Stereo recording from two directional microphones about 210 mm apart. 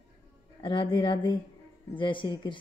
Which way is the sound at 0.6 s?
25° left (ahead or behind).